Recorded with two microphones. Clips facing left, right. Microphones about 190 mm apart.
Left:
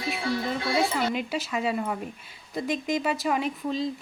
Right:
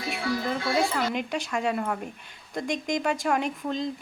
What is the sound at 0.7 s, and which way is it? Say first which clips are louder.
Speech: left 1 dB; 5° left (ahead or behind).